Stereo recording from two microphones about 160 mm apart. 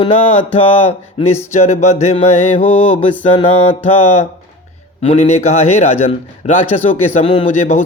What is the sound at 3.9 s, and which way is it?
Speech, 40° left (ahead or behind).